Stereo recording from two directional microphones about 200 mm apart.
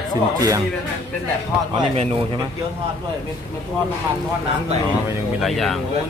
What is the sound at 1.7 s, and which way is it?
Speech, 30° right (ahead or behind).